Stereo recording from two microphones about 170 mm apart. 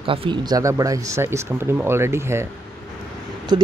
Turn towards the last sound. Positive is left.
turn(degrees=-25)  # may be behind; listen again after turning